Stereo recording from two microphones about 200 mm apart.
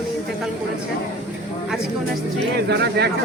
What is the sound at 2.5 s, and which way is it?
Speech, 55° right (ahead or behind).